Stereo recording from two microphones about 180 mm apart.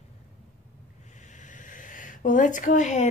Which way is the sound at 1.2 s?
45° left (ahead or behind).